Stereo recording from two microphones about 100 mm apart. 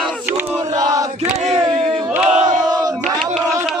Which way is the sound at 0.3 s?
20° right (ahead or behind).